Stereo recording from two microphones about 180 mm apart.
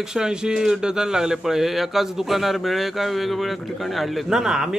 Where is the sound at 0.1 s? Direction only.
5° right (ahead or behind).